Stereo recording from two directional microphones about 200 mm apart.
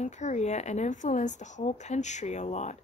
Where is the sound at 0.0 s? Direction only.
35° left (ahead or behind).